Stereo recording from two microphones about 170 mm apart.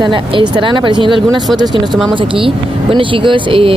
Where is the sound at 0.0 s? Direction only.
25° right (ahead or behind).